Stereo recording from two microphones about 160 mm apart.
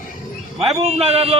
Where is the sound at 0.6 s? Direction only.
35° right (ahead or behind).